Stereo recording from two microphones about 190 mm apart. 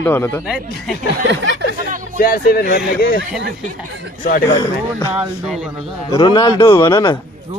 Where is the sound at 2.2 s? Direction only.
50° left (ahead or behind).